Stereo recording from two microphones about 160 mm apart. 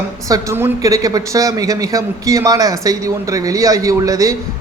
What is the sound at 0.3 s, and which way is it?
A man's voice, 20° right (ahead or behind).